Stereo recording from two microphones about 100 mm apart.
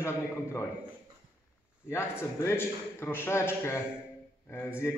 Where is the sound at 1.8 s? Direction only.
25° left (ahead or behind).